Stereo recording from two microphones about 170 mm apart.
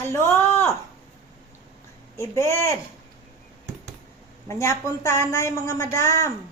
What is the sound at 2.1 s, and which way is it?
Speech, 15° left (ahead or behind).